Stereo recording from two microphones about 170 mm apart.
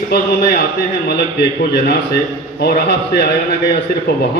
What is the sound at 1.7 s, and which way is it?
A man's voice, 75° left (ahead or behind).